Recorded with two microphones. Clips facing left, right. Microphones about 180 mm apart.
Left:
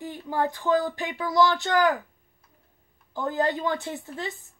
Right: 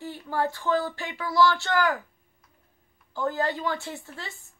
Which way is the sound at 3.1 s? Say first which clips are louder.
Left 2 dB; 20° left (ahead or behind).